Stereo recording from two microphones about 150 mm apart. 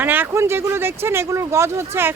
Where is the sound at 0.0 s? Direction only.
15° right (ahead or behind).